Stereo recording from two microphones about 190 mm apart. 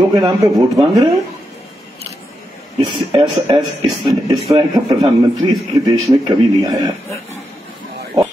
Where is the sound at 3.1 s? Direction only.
25° right (ahead or behind).